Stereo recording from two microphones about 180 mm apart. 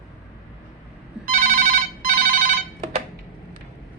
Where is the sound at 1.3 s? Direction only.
45° right (ahead or behind).